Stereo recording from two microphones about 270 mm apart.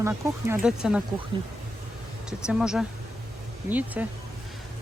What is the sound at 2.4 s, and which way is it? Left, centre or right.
Speech, centre.